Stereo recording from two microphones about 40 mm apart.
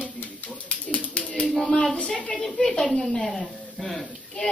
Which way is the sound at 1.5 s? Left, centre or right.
Centre.